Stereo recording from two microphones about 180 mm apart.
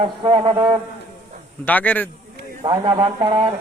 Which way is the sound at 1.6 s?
10° left (ahead or behind).